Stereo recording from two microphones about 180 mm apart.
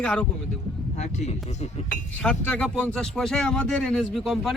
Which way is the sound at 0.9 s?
40° left (ahead or behind).